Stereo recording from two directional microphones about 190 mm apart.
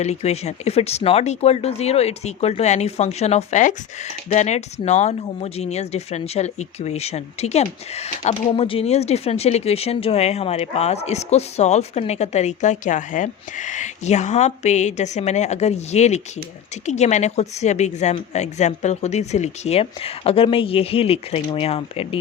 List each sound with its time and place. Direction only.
0.0 s speech: 35° left (ahead or behind)